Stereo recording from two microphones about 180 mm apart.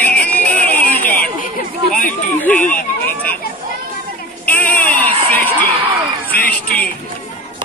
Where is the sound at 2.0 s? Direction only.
10° left (ahead or behind).